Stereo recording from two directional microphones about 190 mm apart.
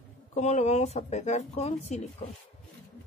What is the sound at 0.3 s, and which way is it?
Speech, 35° left (ahead or behind).